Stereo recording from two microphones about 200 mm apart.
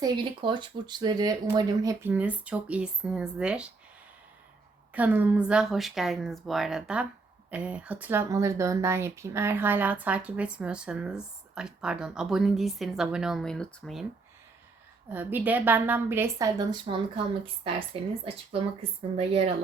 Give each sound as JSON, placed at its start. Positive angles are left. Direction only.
{"t": 0.0, "sound": "speech", "side_deg": -25}
{"t": 4.9, "sound": "speech", "side_deg": -10}
{"t": 15.1, "sound": "speech", "side_deg": -10}